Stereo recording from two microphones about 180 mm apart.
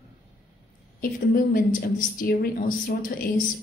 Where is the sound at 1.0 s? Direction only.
55° left (ahead or behind).